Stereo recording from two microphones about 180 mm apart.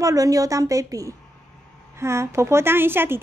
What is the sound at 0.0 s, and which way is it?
A woman's voice, 20° right (ahead or behind).